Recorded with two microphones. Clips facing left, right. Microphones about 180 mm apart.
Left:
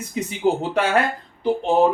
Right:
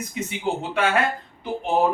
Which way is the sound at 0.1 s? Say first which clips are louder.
Left 7 dB; 35° left (ahead or behind).